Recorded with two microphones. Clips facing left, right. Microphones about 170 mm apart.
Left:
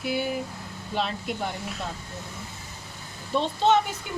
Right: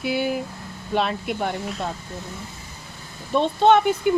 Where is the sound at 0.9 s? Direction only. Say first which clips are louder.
Right 5 dB; 60° right (ahead or behind).